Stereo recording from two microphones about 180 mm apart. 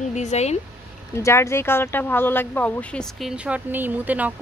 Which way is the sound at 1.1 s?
15° left (ahead or behind).